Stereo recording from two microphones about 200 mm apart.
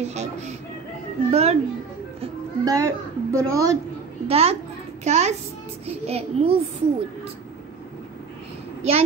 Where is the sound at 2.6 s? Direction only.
20° right (ahead or behind).